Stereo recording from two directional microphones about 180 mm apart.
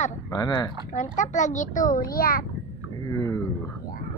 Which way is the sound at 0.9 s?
45° left (ahead or behind).